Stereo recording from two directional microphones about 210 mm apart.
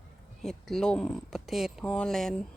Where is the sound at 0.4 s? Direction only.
Centre (ahead or behind).